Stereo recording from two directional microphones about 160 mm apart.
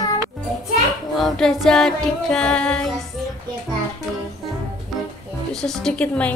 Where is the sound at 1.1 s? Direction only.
Centre (ahead or behind).